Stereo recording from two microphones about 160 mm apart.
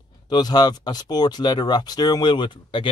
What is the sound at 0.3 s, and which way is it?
Speech, 25° left (ahead or behind).